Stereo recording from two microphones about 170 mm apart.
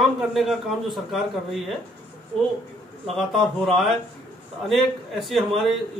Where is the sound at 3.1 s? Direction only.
Centre (ahead or behind).